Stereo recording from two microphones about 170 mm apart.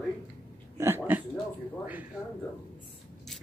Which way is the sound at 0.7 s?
15° right (ahead or behind).